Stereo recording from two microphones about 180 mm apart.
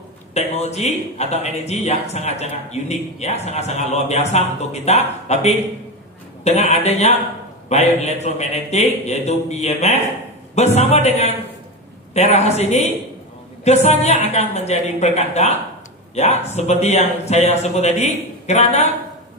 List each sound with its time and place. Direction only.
0.3 s speech: 35° left (ahead or behind)